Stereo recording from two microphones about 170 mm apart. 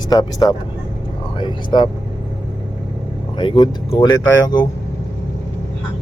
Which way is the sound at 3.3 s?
30° left (ahead or behind).